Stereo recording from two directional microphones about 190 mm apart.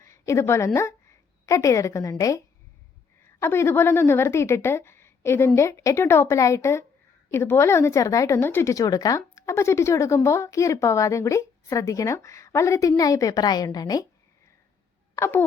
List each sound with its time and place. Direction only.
0.0 s a woman's voice: 15° left (ahead or behind)
3.4 s speech: 15° left (ahead or behind)
13.7 s a sound: 20° left (ahead or behind)
15.1 s speech: 15° left (ahead or behind)